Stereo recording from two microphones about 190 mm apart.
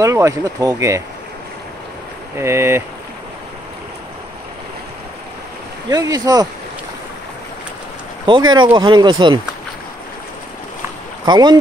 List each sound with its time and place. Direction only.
0.0 s speech: 15° right (ahead or behind)
2.3 s speech: 15° right (ahead or behind)
5.9 s speech: 20° right (ahead or behind)
8.3 s speech: 25° right (ahead or behind)
11.2 s speech: 20° right (ahead or behind)